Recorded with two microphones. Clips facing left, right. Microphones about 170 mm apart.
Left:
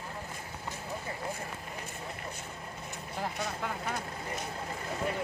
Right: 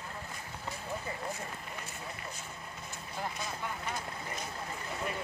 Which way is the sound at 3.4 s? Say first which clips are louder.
Left 3 dB; 70° left (ahead or behind).